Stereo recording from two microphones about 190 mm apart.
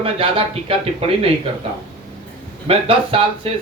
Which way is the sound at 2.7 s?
30° right (ahead or behind).